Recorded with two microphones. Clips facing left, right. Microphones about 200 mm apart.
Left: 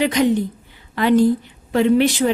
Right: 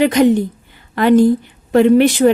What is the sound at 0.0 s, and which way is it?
A woman's voice, 50° right (ahead or behind).